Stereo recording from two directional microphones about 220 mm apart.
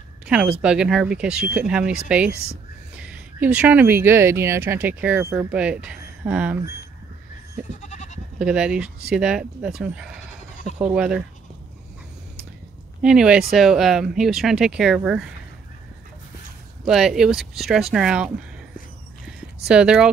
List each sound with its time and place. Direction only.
0.3 s speech: 5° right (ahead or behind)
7.8 s goat: 30° left (ahead or behind)
8.4 s speech: 5° right (ahead or behind)
13.0 s speech: 5° right (ahead or behind)
16.8 s speech: centre (ahead or behind)
19.7 s speech: 5° right (ahead or behind)